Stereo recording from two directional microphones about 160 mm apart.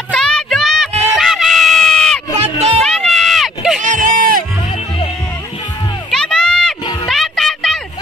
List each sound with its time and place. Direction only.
0.1 s music: 5° left (ahead or behind)
1.1 s crowd: centre (ahead or behind)
2.3 s a sound: 40° right (ahead or behind)
2.8 s run: 5° left (ahead or behind)
3.8 s a sound: 55° right (ahead or behind)
6.0 s music: 5° left (ahead or behind)